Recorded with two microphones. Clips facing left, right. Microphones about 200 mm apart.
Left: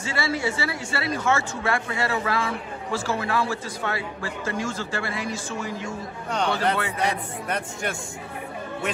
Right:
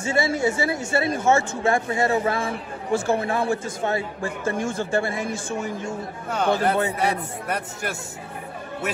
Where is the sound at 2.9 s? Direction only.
55° right (ahead or behind).